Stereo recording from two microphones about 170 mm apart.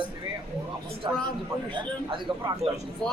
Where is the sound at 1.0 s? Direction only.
30° right (ahead or behind).